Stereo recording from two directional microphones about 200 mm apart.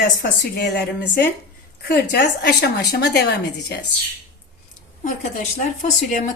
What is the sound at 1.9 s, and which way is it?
A woman's voice, 55° left (ahead or behind).